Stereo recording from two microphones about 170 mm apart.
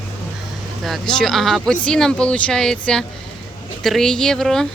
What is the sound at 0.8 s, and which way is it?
Speech, centre (ahead or behind).